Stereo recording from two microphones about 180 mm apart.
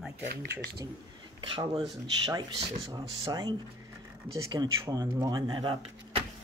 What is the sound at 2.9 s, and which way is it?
Speech, 20° right (ahead or behind).